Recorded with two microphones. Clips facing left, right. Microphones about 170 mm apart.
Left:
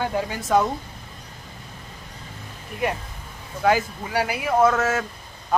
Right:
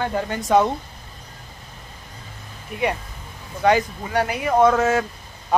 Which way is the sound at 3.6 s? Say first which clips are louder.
Right 2 dB; 5° left (ahead or behind).